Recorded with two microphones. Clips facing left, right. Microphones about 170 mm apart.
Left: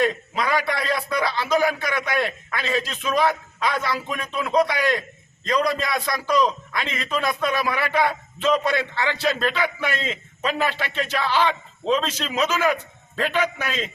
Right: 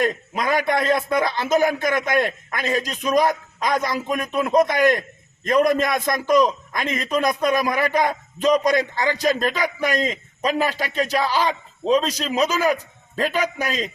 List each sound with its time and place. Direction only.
0.0 s a man's voice: 45° right (ahead or behind)